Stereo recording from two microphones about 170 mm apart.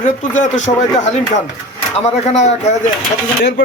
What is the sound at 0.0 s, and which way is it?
A man's voice, 50° left (ahead or behind).